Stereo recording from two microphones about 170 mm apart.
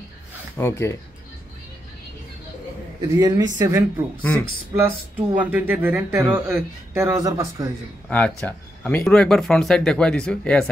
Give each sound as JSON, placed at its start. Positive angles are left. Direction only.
{"t": 0.6, "sound": "speech", "side_deg": 15}
{"t": 3.0, "sound": "speech", "side_deg": -25}
{"t": 4.8, "sound": "speech", "side_deg": -10}
{"t": 8.1, "sound": "speech", "side_deg": 10}